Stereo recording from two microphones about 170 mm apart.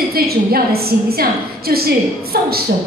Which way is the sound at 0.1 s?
65° right (ahead or behind).